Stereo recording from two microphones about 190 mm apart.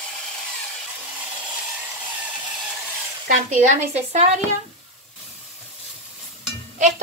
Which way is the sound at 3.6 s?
35° right (ahead or behind).